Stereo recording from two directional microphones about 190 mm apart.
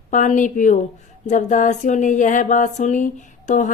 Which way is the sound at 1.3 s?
40° left (ahead or behind).